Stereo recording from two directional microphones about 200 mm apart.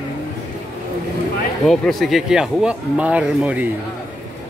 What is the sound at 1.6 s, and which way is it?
Speech, centre (ahead or behind).